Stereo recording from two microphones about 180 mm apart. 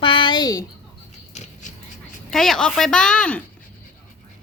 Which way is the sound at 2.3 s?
Centre (ahead or behind).